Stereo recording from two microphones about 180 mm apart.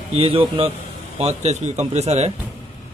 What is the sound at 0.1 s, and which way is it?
Speech, 30° right (ahead or behind).